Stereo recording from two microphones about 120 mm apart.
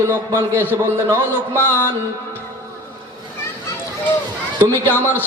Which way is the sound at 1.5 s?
20° left (ahead or behind).